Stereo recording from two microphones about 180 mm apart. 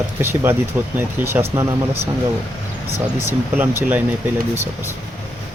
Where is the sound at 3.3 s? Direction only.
10° right (ahead or behind).